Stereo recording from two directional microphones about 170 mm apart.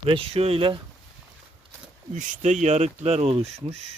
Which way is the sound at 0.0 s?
35° right (ahead or behind).